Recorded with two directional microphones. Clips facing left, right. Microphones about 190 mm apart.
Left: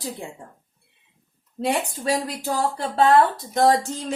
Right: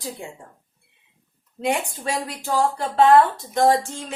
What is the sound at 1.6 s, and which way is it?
Speech, 35° left (ahead or behind).